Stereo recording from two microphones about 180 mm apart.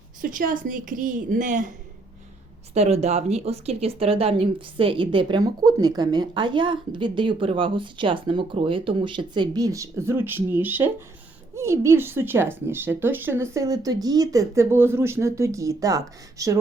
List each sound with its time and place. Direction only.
0.2 s a woman's voice: 50° right (ahead or behind)
2.7 s speech: 35° right (ahead or behind); by 16.6 s 20° right (ahead or behind)